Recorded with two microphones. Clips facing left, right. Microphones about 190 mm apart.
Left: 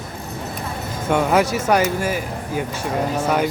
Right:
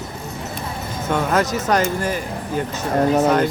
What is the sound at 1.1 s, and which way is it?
Speech, 10° left (ahead or behind).